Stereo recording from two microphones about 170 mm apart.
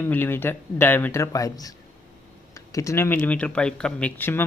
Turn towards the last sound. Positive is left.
turn(degrees=10)  # may be behind; listen again after turning